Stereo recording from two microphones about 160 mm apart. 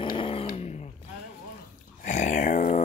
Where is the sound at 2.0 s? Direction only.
50° left (ahead or behind).